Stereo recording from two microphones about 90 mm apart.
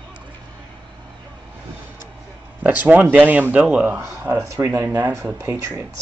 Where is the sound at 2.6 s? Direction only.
15° right (ahead or behind).